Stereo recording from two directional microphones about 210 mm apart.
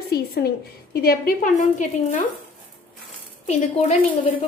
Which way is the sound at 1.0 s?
40° left (ahead or behind).